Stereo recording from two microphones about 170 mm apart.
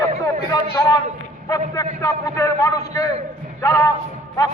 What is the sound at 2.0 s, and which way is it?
A man's voice, 15° left (ahead or behind).